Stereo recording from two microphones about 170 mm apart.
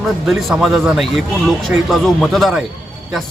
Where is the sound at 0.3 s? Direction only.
Centre (ahead or behind).